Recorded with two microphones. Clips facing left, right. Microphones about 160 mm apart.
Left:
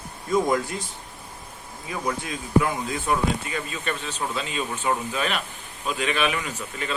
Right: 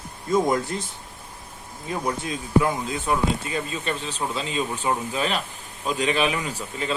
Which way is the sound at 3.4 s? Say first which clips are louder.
Right 2 dB; 30° right (ahead or behind).